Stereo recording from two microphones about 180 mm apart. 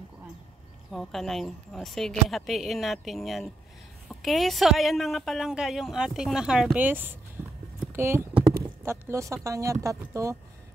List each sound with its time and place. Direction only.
0.9 s a woman's voice: centre (ahead or behind); by 10.3 s 15° right (ahead or behind)